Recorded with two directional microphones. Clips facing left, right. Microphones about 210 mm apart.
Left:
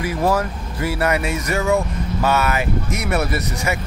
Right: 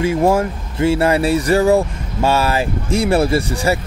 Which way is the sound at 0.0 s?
25° right (ahead or behind).